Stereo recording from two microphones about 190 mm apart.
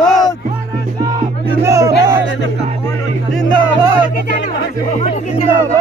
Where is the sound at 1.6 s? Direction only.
15° right (ahead or behind).